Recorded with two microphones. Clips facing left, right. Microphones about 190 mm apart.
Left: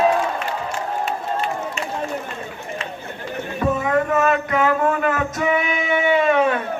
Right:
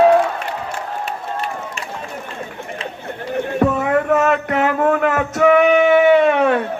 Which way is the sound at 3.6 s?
65° right (ahead or behind).